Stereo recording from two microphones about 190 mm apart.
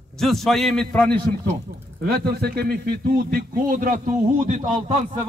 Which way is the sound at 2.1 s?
55° right (ahead or behind).